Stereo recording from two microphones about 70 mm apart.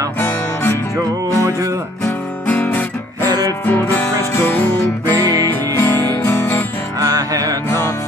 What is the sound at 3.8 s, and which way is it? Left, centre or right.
Music, left.